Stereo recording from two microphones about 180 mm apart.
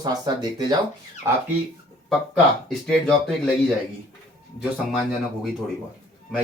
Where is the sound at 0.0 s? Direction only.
20° right (ahead or behind).